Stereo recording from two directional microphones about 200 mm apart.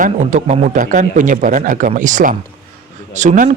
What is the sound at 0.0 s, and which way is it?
Speech, 35° right (ahead or behind).